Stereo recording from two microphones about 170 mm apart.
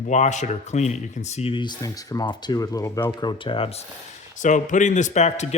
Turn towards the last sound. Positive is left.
turn(degrees=40)  # may be behind; listen again after turning